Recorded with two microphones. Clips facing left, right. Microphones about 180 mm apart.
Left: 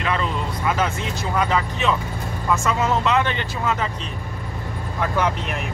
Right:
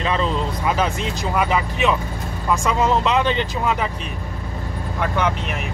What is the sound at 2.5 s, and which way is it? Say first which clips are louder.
Speech: right 2 dB; 15° right (ahead or behind).